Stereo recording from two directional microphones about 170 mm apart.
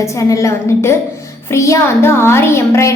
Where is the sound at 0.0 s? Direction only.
20° left (ahead or behind).